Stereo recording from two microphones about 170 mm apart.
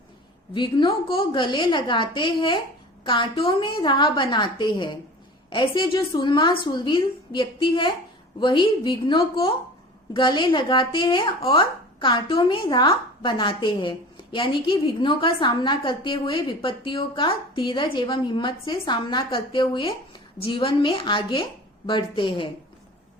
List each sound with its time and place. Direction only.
0.5 s speech: 25° left (ahead or behind)